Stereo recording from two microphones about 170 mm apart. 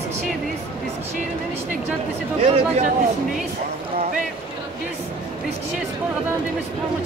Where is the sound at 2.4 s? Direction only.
35° right (ahead or behind).